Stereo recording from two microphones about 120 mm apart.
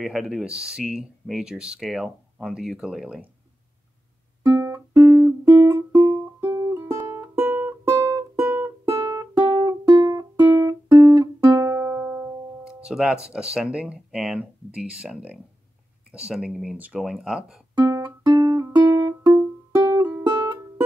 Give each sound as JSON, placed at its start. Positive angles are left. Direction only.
{"t": 0.0, "sound": "speech", "side_deg": 0}
{"t": 4.4, "sound": "music", "side_deg": -25}
{"t": 12.6, "sound": "speech", "side_deg": -5}
{"t": 17.8, "sound": "music", "side_deg": -30}